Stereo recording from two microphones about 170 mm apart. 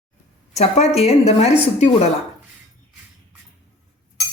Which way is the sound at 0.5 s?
40° left (ahead or behind).